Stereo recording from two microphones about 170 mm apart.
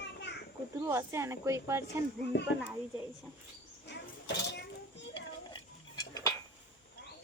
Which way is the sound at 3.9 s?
85° left.